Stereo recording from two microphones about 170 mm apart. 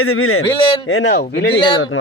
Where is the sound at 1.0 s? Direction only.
80° left.